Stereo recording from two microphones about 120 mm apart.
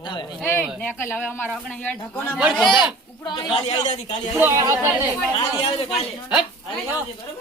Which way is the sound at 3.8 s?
75° left (ahead or behind).